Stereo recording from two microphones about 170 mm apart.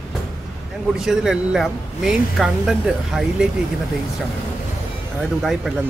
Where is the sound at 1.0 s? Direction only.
5° right (ahead or behind).